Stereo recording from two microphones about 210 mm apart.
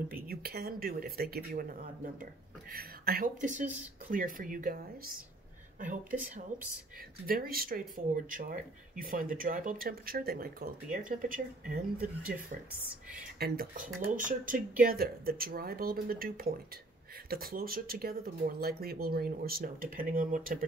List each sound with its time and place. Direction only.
0.1 s speech: 45° right (ahead or behind)
5.8 s speech: 40° right (ahead or behind)
13.4 s speech: 45° right (ahead or behind)